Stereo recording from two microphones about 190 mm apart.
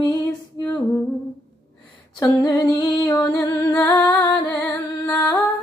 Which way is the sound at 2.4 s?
20° left (ahead or behind).